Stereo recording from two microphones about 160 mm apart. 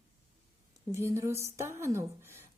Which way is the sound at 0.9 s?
15° right (ahead or behind).